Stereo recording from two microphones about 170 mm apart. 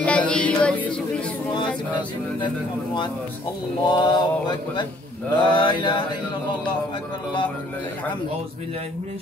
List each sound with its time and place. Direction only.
0.0 s music: 5° left (ahead or behind)
2.0 s speech: 25° left (ahead or behind)